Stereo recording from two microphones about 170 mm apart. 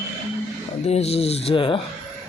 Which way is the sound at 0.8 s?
35° left (ahead or behind).